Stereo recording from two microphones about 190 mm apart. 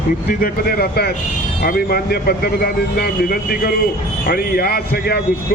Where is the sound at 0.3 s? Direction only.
55° left (ahead or behind).